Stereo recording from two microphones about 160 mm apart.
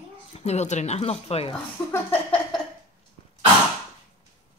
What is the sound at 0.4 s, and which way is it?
Speech, 45° left (ahead or behind).